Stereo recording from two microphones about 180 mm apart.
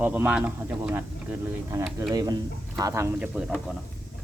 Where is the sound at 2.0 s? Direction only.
20° right (ahead or behind); by 3.6 s 5° right (ahead or behind).